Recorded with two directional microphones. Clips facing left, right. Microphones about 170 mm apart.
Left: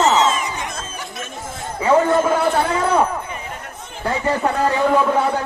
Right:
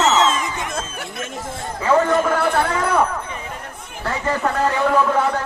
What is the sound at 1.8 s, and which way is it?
Jingle bell, 15° left (ahead or behind).